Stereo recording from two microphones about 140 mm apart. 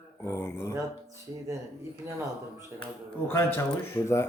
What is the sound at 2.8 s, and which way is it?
Speech, 15° left (ahead or behind).